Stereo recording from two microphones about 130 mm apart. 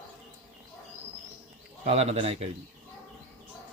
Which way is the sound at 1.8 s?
55° right (ahead or behind).